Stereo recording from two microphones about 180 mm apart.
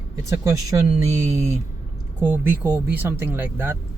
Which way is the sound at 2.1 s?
10° right (ahead or behind).